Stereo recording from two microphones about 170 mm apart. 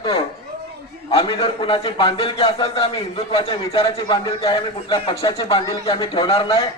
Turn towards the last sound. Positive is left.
turn(degrees=30)  # may be behind; listen again after turning